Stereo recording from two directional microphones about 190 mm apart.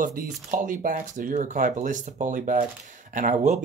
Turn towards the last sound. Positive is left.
turn(degrees=-40)  # may be behind; listen again after turning